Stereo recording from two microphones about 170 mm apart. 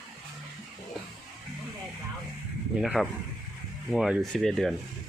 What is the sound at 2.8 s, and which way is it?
Speech, 5° right (ahead or behind).